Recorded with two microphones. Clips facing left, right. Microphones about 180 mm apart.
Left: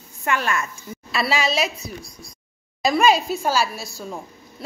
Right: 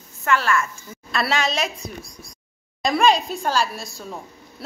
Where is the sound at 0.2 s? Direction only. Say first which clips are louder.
Right 2 dB; 15° left (ahead or behind).